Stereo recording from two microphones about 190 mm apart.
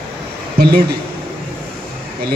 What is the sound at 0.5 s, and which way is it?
Speech, 55° right (ahead or behind).